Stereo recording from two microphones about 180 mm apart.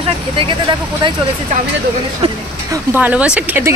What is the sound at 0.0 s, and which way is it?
Speech, 30° right (ahead or behind).